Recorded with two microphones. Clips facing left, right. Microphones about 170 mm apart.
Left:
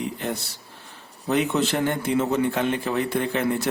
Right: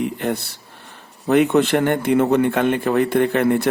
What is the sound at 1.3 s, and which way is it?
Speech, 60° right (ahead or behind).